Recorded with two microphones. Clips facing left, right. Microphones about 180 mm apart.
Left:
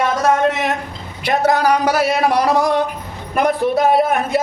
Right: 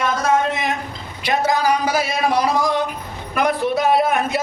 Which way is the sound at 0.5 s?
70° left (ahead or behind).